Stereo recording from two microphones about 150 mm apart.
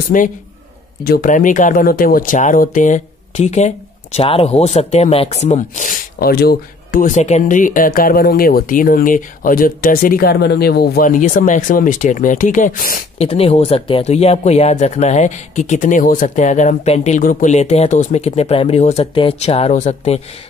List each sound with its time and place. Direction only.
0.1 s speech: 65° left (ahead or behind)
1.0 s speech: 75° left (ahead or behind); by 5.9 s 50° left (ahead or behind)
6.1 s speech: 90° left; by 7.2 s 70° left (ahead or behind)
7.2 s speech: 50° left (ahead or behind); by 13.0 s 70° left (ahead or behind)
13.2 s speech: 40° left (ahead or behind)
17.2 s speech: 60° left (ahead or behind)